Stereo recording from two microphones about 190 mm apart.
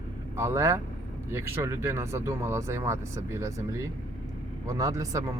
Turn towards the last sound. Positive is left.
turn(degrees=-15)  # may be behind; listen again after turning